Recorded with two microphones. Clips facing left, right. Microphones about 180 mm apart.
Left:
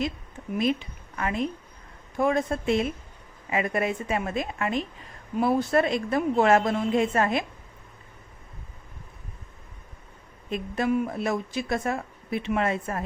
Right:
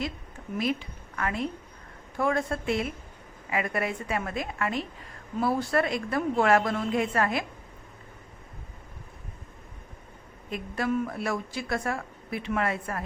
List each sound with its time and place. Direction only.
0.6 s a woman's voice: 20° left (ahead or behind)
10.5 s speech: 20° left (ahead or behind)